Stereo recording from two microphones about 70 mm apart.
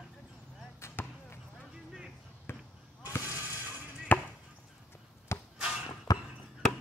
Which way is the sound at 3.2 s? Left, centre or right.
Right.